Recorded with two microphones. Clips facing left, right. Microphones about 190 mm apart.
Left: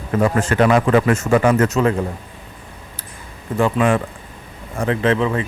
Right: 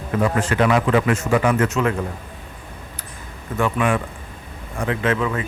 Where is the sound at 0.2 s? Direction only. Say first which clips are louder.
Left 3 dB; 45° left (ahead or behind).